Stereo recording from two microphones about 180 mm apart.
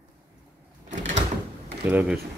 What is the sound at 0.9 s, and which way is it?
Door, 40° right (ahead or behind).